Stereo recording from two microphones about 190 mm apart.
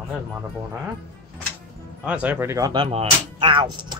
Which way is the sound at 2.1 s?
10° right (ahead or behind).